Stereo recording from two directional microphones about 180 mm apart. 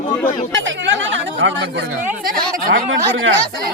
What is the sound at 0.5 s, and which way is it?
Speech, 85° right.